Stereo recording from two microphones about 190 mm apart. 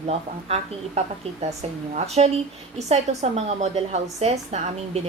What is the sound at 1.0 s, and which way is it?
A woman's voice, 35° right (ahead or behind).